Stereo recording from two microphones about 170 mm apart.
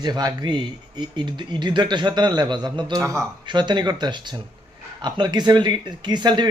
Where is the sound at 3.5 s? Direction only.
25° right (ahead or behind).